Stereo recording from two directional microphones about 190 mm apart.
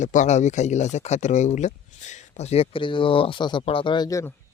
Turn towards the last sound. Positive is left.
turn(degrees=15)  # may be behind; listen again after turning